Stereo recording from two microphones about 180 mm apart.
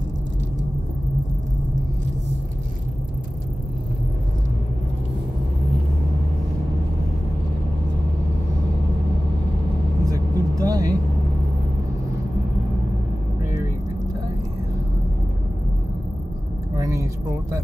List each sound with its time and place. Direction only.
10.0 s vehicle: 20° right (ahead or behind)
16.7 s vehicle: 20° right (ahead or behind)